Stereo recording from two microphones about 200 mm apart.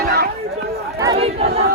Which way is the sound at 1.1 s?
30° right (ahead or behind).